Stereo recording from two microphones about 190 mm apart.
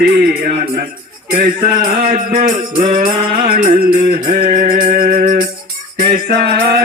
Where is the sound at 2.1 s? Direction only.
45° right (ahead or behind).